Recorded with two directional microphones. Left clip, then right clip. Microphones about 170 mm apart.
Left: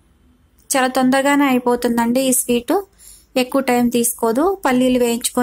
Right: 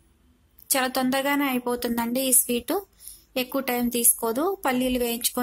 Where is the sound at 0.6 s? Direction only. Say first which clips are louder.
Left 8 dB; 15° left (ahead or behind).